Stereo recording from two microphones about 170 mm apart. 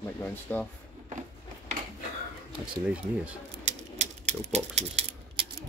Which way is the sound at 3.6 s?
45° right (ahead or behind).